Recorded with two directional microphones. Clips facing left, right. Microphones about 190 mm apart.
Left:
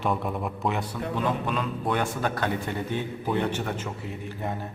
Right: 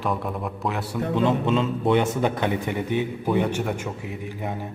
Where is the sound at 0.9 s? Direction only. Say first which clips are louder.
Right 6 dB; 20° right (ahead or behind).